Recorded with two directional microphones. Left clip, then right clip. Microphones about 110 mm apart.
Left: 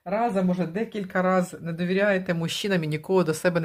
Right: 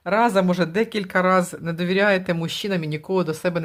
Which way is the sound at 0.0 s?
55° right (ahead or behind).